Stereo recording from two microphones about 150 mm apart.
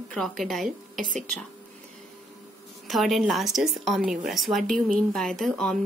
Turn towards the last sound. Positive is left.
turn(degrees=5)  # may be behind; listen again after turning